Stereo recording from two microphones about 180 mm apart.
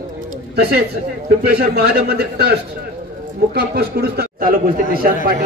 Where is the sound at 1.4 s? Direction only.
60° right (ahead or behind).